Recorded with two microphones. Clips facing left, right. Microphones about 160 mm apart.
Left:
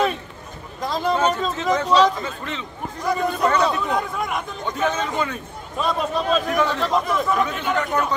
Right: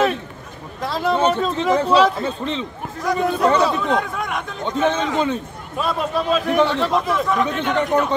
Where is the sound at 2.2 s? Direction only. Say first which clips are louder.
Right 6 dB; 25° right (ahead or behind).